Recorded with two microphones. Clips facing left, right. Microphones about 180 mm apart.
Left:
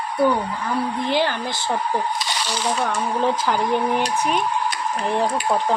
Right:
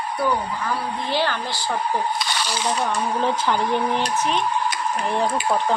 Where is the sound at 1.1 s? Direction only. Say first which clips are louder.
Even; 15° left (ahead or behind).